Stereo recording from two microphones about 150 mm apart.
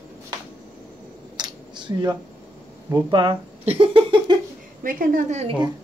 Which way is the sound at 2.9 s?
30° right (ahead or behind).